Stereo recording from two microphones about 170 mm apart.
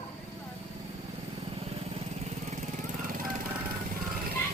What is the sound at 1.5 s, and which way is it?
Vehicle, 35° right (ahead or behind).